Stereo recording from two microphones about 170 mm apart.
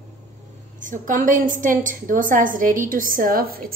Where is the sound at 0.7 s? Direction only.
50° right (ahead or behind).